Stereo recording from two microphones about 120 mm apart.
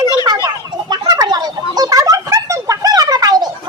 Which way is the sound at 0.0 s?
35° left (ahead or behind).